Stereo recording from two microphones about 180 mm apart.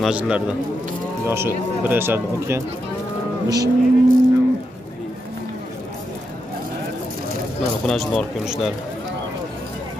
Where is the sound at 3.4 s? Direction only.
20° right (ahead or behind).